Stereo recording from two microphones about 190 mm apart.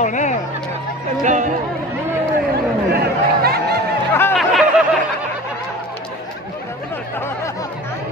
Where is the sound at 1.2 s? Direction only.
40° right (ahead or behind).